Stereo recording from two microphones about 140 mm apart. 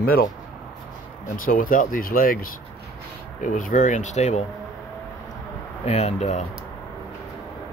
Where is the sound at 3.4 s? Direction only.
70° left (ahead or behind).